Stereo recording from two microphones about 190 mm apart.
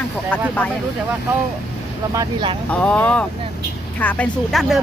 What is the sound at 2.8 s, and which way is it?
A woman's voice, 5° left (ahead or behind).